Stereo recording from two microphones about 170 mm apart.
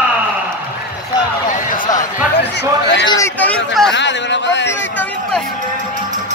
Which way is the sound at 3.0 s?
15° left (ahead or behind).